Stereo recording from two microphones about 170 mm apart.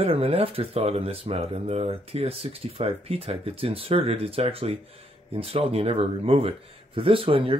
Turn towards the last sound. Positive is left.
turn(degrees=-30)  # may be behind; listen again after turning